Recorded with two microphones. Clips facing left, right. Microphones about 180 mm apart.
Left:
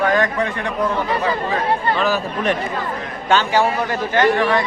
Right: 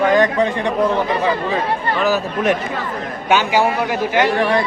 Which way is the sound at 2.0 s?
10° right (ahead or behind).